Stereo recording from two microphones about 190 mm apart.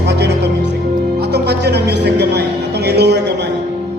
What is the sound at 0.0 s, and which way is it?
Music, 65° right (ahead or behind).